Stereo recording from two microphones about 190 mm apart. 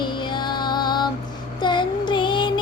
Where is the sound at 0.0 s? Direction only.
25° left (ahead or behind).